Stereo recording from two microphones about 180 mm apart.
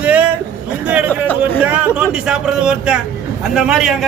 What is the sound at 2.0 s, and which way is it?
A man's voice, 5° right (ahead or behind).